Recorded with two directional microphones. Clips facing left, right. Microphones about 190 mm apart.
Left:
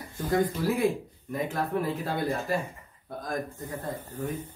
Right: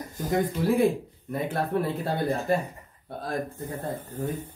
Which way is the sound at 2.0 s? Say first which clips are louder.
Right 3 dB; 35° right (ahead or behind).